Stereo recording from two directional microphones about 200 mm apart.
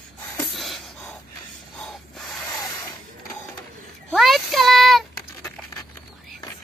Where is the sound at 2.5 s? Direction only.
20° left (ahead or behind).